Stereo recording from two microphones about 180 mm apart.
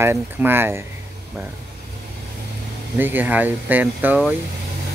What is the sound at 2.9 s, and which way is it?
Speech, 10° right (ahead or behind).